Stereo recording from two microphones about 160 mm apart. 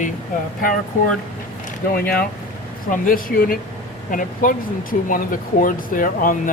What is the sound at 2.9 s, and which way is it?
Speech, 60° left (ahead or behind).